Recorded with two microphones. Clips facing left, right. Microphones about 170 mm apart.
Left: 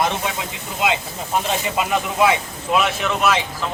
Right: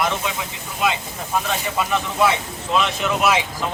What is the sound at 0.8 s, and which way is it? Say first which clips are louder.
Speech: left 1 dB; 20° left (ahead or behind).